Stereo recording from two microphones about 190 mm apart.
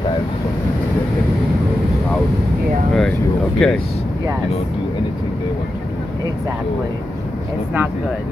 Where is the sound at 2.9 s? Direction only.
5° left (ahead or behind).